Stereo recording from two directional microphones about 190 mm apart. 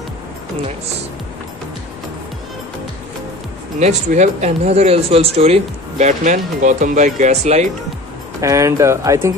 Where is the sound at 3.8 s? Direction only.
40° right (ahead or behind).